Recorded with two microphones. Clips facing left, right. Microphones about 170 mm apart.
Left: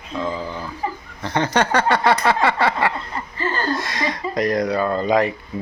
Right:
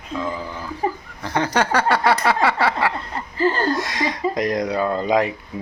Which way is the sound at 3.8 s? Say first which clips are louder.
Right 1 dB; 15° right (ahead or behind).